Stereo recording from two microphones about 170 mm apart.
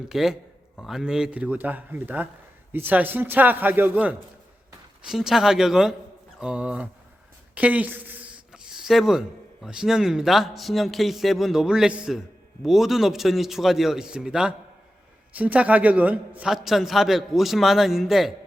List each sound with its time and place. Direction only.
0.1 s a man's voice: centre (ahead or behind)